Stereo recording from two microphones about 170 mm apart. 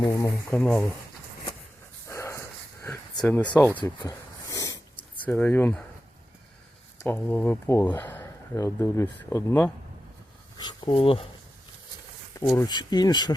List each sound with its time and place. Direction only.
0.0 s speech: 20° left (ahead or behind)
0.5 s speech: 5° left (ahead or behind)
2.0 s dog: 15° left (ahead or behind)
3.2 s speech: 10° left (ahead or behind)
3.8 s a sound: 20° left (ahead or behind)
5.1 s speech: 10° left (ahead or behind)
7.0 s speech: 10° left (ahead or behind)
10.6 s speech: 25° left (ahead or behind)
12.4 s speech: 20° left (ahead or behind)